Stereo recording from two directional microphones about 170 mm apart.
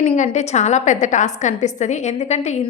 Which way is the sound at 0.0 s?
45° left (ahead or behind).